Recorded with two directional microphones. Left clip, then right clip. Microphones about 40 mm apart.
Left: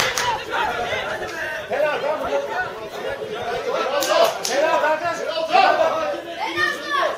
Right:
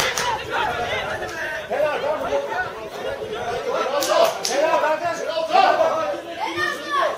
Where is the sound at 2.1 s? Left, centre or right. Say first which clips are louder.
Even; left.